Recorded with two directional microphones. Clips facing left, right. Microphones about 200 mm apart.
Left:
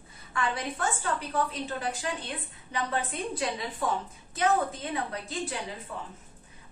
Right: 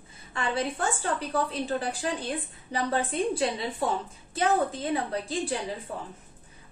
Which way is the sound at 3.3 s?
30° right (ahead or behind).